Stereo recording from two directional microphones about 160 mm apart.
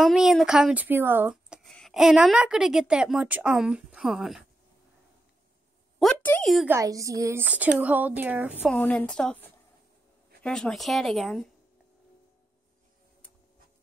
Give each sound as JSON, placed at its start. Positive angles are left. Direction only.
{"t": 0.0, "sound": "speech", "side_deg": 0}
{"t": 5.9, "sound": "speech", "side_deg": 5}
{"t": 6.7, "sound": "a woman's voice", "side_deg": -20}
{"t": 8.6, "sound": "a woman's voice", "side_deg": 10}